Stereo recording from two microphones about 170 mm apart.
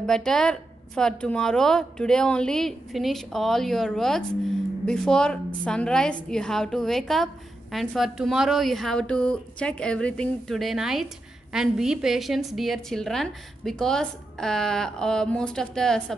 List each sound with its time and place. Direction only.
0.0 s a woman's voice: 5° left (ahead or behind)